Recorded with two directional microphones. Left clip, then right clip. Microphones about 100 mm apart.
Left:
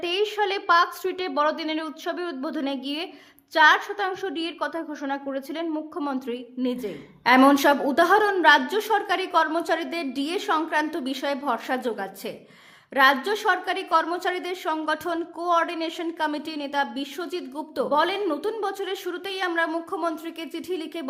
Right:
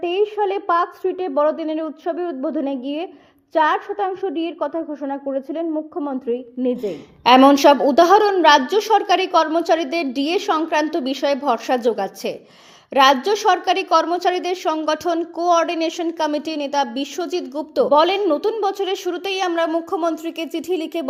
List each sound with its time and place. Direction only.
0.0 s a woman's voice: 25° right (ahead or behind)